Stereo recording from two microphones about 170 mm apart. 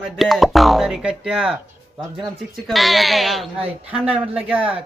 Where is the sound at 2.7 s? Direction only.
Centre (ahead or behind).